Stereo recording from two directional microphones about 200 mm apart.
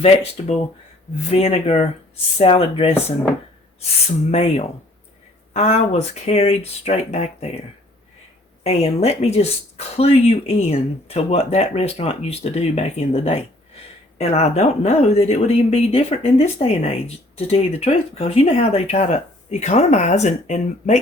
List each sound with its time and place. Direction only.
0.0 s speech: 30° left (ahead or behind)
4.3 s speech: 30° left (ahead or behind)
8.6 s speech: 30° left (ahead or behind)